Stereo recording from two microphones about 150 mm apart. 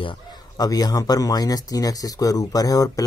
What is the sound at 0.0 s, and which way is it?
Speech, 30° left (ahead or behind).